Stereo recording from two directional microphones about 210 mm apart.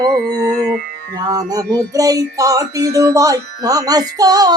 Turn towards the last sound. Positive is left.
turn(degrees=-20)  # may be behind; listen again after turning